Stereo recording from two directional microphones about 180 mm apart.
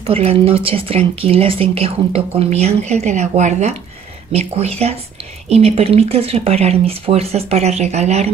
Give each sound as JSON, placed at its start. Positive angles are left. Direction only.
{"t": 0.0, "sound": "speech", "side_deg": -35}